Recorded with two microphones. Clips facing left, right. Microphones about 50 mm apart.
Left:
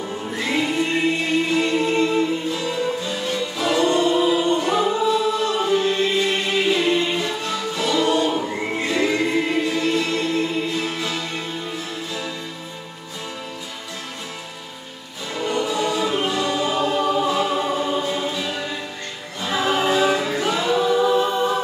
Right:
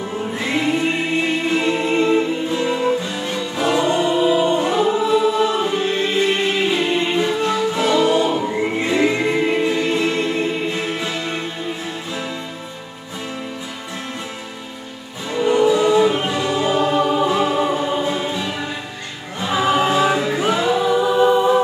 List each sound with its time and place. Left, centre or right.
0.2 s music: centre
15.4 s choir: right